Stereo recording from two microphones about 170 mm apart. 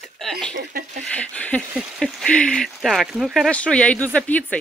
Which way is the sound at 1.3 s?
10° left (ahead or behind).